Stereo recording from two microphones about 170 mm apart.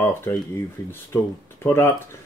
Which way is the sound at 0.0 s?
15° left (ahead or behind).